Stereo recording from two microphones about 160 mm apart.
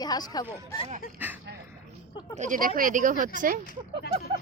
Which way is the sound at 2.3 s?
50° right (ahead or behind).